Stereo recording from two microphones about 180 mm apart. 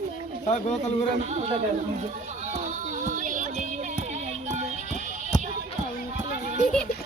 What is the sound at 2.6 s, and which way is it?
Music, 45° right (ahead or behind).